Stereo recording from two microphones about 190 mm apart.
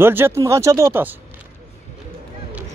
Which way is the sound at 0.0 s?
10° right (ahead or behind).